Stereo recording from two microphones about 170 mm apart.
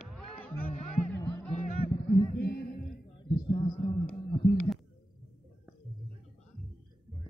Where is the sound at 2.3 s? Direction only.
65° left (ahead or behind).